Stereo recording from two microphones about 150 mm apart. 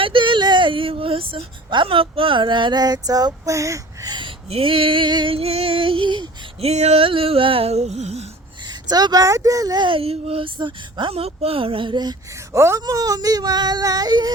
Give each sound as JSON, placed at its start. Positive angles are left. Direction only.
{"t": 0.0, "sound": "speech", "side_deg": -35}
{"t": 4.4, "sound": "speech", "side_deg": -40}
{"t": 6.7, "sound": "a sound", "side_deg": -45}
{"t": 8.9, "sound": "speech", "side_deg": -25}
{"t": 12.5, "sound": "speech", "side_deg": -20}